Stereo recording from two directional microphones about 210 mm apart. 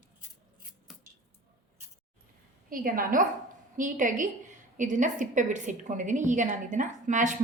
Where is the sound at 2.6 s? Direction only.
40° right (ahead or behind).